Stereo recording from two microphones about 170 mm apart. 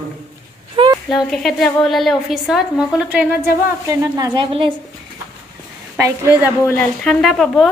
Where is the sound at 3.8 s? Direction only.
20° right (ahead or behind).